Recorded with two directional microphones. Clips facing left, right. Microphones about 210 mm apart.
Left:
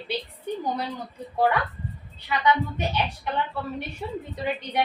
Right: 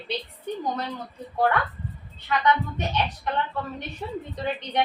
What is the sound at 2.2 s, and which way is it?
Speech, 10° left (ahead or behind).